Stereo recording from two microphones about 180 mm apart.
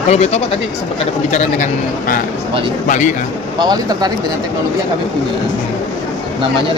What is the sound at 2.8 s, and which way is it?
Speech, 45° left (ahead or behind).